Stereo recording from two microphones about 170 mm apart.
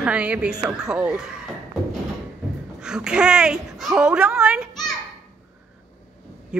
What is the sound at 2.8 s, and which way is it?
A woman's voice, 5° right (ahead or behind).